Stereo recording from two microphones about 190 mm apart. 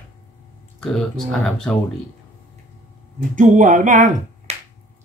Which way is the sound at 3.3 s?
40° right (ahead or behind).